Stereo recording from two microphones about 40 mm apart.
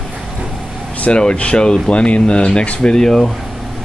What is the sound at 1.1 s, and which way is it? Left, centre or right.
Speech, left.